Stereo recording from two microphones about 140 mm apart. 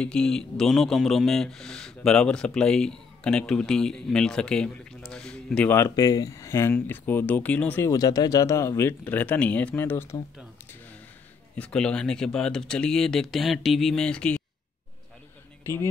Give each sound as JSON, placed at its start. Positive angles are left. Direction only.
{"t": 0.0, "sound": "speech", "side_deg": 5}
{"t": 7.9, "sound": "speech", "side_deg": 25}
{"t": 11.5, "sound": "speech", "side_deg": 5}
{"t": 15.6, "sound": "speech", "side_deg": 20}